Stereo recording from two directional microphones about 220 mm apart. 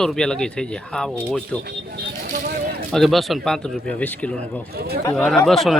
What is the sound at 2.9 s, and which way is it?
Speech, centre (ahead or behind).